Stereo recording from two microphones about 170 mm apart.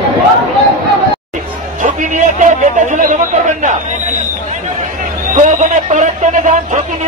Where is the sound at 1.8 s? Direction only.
45° right (ahead or behind).